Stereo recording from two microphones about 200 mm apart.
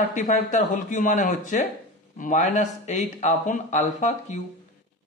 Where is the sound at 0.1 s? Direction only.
40° left (ahead or behind).